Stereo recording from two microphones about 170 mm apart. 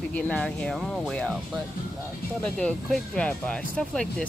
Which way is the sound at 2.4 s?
5° left (ahead or behind).